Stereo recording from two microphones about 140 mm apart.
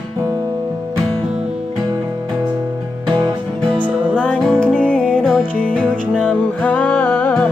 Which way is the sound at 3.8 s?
10° right (ahead or behind).